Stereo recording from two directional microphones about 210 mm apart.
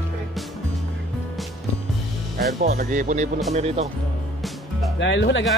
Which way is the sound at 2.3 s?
45° right (ahead or behind).